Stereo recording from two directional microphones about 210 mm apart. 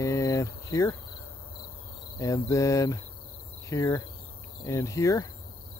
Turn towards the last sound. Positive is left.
turn(degrees=15)  # may be behind; listen again after turning